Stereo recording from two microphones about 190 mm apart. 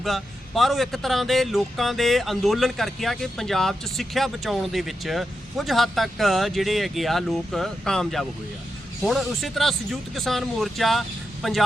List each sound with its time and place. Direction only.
0.0 s a man's voice: centre (ahead or behind)